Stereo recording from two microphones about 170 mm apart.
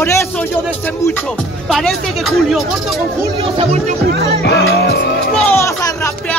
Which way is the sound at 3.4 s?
35° right (ahead or behind).